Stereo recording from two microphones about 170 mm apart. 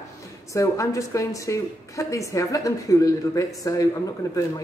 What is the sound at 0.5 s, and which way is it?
A woman's voice, 20° left (ahead or behind).